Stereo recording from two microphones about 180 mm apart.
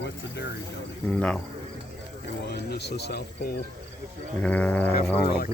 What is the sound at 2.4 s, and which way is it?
Speech, 65° left (ahead or behind).